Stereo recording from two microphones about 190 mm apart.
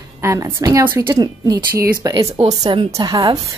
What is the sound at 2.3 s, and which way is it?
A woman's voice, 30° right (ahead or behind).